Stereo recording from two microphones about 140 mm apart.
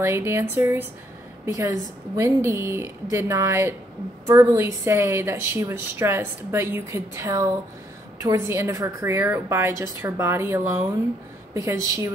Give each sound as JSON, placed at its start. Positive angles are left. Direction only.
{"t": 0.0, "sound": "a woman's voice", "side_deg": -20}